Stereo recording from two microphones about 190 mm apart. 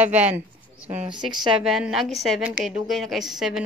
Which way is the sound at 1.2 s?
30° right (ahead or behind).